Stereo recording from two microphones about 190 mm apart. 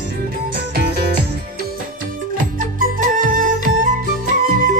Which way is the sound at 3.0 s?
45° right (ahead or behind).